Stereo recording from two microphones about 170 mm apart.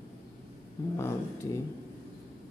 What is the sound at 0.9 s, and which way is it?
Speech, 15° left (ahead or behind).